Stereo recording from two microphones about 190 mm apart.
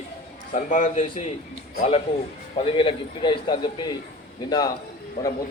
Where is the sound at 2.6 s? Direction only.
25° left (ahead or behind).